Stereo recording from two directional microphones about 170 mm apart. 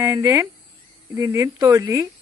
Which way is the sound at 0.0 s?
15° right (ahead or behind).